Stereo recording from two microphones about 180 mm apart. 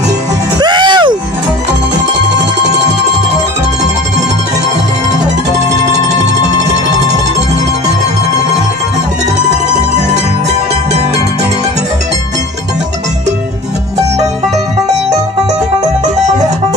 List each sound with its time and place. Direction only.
0.6 s music: 25° right (ahead or behind)
6.1 s music: 40° right (ahead or behind)
9.9 s music: 40° right (ahead or behind)